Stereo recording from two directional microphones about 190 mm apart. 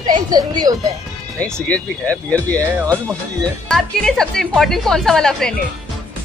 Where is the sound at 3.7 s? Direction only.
5° left (ahead or behind).